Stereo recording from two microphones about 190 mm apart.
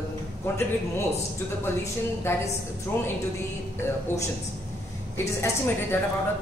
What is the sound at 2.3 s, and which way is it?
Speech, 15° left (ahead or behind).